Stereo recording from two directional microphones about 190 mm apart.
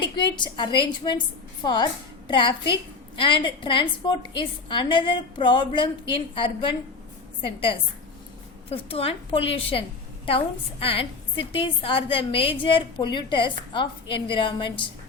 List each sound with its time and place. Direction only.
0.0 s a woman's voice: 25° left (ahead or behind)